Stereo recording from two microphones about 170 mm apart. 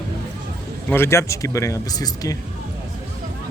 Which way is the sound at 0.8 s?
15° left (ahead or behind).